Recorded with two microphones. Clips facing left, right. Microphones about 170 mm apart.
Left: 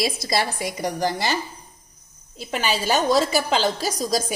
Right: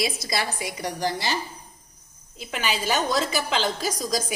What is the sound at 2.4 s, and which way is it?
A woman's voice, 40° left (ahead or behind).